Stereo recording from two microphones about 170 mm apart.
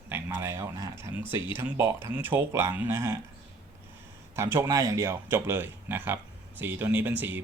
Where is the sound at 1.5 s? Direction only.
15° right (ahead or behind).